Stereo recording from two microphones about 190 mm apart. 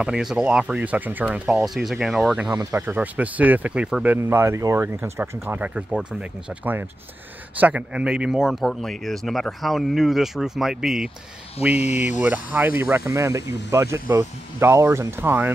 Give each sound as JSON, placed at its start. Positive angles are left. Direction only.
{"t": 0.0, "sound": "speech", "side_deg": -5}
{"t": 2.5, "sound": "speech", "side_deg": -15}
{"t": 7.5, "sound": "speech", "side_deg": -10}
{"t": 11.7, "sound": "speech", "side_deg": 35}
{"t": 12.3, "sound": "speech", "side_deg": -10}